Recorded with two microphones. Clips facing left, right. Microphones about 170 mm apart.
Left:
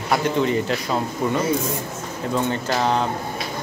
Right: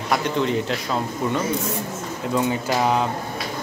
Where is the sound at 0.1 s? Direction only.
Centre (ahead or behind).